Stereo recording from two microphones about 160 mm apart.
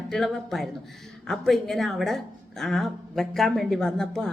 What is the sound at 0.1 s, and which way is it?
A woman's voice, centre (ahead or behind).